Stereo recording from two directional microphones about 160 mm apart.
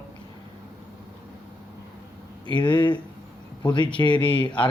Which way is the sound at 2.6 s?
30° left (ahead or behind).